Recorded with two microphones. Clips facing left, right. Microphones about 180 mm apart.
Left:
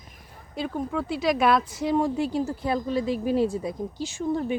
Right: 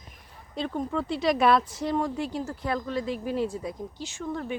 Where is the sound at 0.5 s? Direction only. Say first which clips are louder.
Left 1 dB; 5° left (ahead or behind).